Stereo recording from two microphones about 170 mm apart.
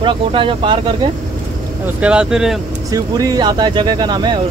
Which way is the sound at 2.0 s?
5° right (ahead or behind).